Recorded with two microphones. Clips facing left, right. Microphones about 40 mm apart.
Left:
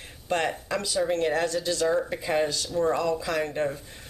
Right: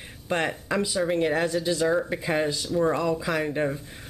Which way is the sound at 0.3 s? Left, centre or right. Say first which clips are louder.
Right 1 dB; centre.